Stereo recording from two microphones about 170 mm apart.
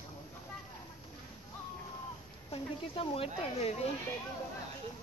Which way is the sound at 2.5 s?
35° left (ahead or behind).